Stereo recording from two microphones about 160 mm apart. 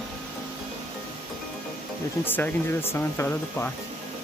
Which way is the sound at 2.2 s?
10° left (ahead or behind).